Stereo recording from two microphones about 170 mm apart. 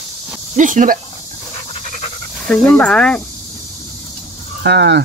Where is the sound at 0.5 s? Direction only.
50° right (ahead or behind).